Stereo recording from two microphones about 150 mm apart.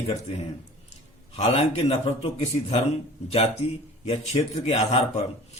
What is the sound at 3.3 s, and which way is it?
A man's voice, 40° left (ahead or behind).